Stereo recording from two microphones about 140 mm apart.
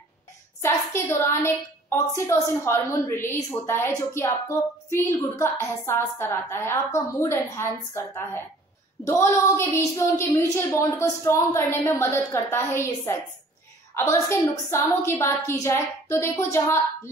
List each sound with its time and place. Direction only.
0.6 s a woman's voice: 20° left (ahead or behind)